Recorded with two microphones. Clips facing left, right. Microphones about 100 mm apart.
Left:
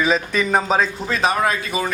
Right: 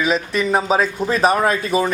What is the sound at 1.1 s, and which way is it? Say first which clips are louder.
Speech: right 3 dB; 40° right (ahead or behind).